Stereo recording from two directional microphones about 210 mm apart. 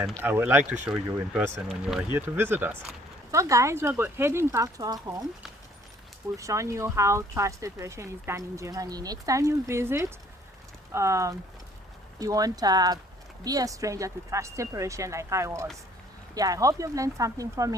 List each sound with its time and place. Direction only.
0.0 s speech: 5° right (ahead or behind)
6.3 s speech: 15° right (ahead or behind)